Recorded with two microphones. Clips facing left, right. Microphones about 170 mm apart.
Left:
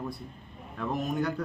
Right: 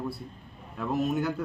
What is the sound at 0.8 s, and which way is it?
Speech, 5° right (ahead or behind).